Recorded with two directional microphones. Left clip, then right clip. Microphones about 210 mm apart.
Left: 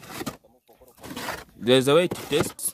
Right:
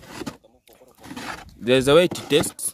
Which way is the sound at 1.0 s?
40° left (ahead or behind).